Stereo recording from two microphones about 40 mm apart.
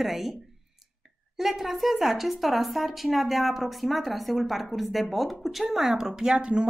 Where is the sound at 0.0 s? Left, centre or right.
Centre.